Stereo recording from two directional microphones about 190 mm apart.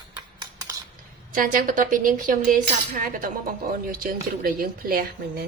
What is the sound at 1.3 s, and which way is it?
Speech, 45° right (ahead or behind).